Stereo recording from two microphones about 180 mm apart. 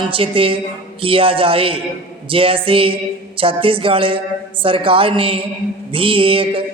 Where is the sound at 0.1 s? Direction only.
30° right (ahead or behind).